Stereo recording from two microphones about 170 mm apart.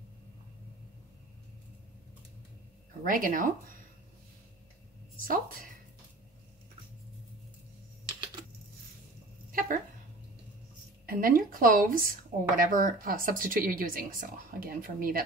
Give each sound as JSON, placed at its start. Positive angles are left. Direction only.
{"t": 3.0, "sound": "speech", "side_deg": -55}
{"t": 5.2, "sound": "speech", "side_deg": -55}
{"t": 9.5, "sound": "a sound", "side_deg": -55}
{"t": 11.1, "sound": "speech", "side_deg": -55}